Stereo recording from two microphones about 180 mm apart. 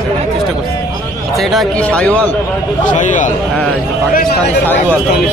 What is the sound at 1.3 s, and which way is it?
Speech, centre (ahead or behind).